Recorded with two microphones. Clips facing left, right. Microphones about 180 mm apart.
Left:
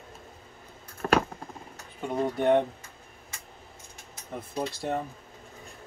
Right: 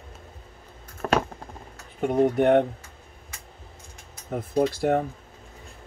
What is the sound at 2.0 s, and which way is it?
Speech, 60° right (ahead or behind).